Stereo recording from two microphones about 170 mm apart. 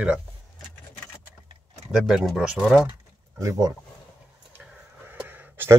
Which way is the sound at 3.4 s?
20° right (ahead or behind).